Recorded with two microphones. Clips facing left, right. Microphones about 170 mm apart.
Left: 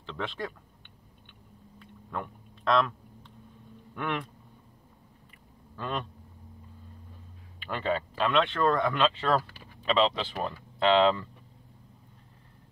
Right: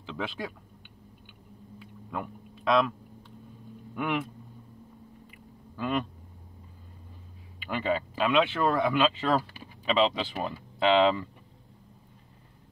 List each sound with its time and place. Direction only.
0.0 s speech: 5° right (ahead or behind)
1.8 s a sound: 5° right (ahead or behind)
3.9 s speech: 10° right (ahead or behind)
5.8 s speech: 5° right (ahead or behind)
7.6 s speech: 5° right (ahead or behind)